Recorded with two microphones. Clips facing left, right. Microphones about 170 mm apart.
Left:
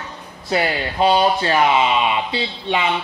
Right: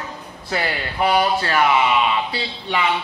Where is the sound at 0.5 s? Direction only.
25° left (ahead or behind).